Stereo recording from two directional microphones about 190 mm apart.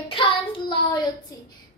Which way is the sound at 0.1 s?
25° left (ahead or behind).